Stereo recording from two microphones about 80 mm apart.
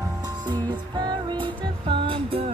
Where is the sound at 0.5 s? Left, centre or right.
Right.